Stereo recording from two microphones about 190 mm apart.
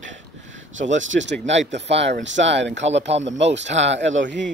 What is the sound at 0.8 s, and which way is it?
Speech, 80° right.